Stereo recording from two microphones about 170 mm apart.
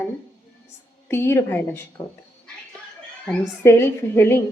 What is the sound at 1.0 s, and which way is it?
Speech, 15° left (ahead or behind).